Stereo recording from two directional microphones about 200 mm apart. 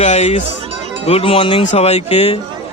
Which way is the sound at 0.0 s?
35° left (ahead or behind).